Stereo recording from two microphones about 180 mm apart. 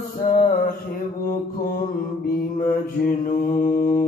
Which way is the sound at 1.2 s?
55° left (ahead or behind).